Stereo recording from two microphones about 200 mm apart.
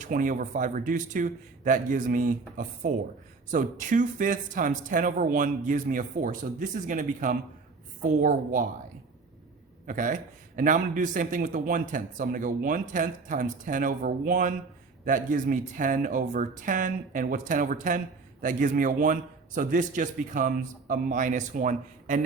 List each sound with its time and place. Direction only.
0.0 s a man's voice: 40° right (ahead or behind)
9.8 s a man's voice: 40° right (ahead or behind)